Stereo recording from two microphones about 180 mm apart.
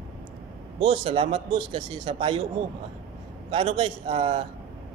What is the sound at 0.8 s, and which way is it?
Speech, 30° right (ahead or behind).